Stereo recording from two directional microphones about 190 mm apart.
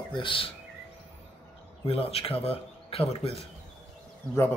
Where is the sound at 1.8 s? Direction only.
30° left (ahead or behind).